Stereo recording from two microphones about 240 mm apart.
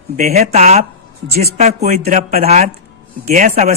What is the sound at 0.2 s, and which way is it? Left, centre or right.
Speech, right.